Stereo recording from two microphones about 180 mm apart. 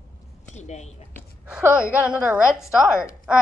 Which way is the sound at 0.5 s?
40° left (ahead or behind).